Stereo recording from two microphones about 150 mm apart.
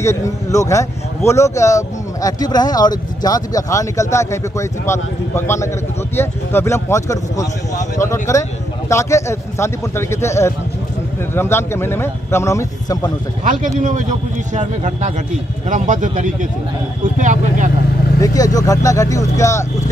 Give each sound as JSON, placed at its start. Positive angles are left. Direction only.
{"t": 0.0, "sound": "speech", "side_deg": 20}
{"t": 13.4, "sound": "speech", "side_deg": -60}
{"t": 18.2, "sound": "speech", "side_deg": 25}